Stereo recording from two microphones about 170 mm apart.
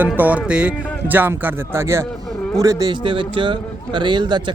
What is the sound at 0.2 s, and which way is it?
A man's voice, 10° right (ahead or behind).